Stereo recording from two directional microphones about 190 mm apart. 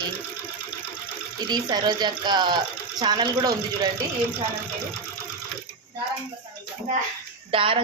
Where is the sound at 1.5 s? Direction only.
20° right (ahead or behind).